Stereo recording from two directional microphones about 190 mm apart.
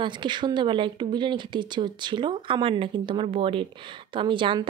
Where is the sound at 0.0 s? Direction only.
25° right (ahead or behind).